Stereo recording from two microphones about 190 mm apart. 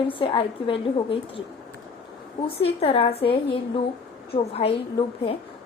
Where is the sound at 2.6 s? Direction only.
30° left (ahead or behind).